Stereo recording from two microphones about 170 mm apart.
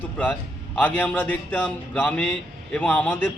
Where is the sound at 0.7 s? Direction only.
10° left (ahead or behind).